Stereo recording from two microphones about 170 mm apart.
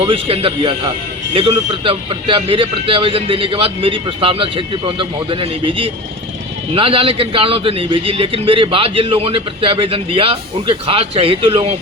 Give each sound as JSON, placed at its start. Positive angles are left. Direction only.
{"t": 0.0, "sound": "speech", "side_deg": -35}